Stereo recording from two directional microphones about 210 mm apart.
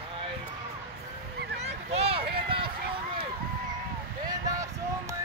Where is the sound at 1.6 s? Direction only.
30° right (ahead or behind).